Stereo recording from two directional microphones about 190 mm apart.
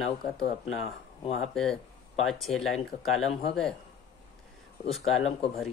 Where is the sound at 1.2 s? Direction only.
35° left (ahead or behind).